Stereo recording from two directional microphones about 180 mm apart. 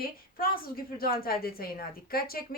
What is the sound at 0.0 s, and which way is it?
A woman's voice, 55° left (ahead or behind).